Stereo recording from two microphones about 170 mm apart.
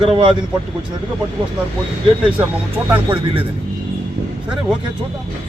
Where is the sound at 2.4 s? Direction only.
10° right (ahead or behind).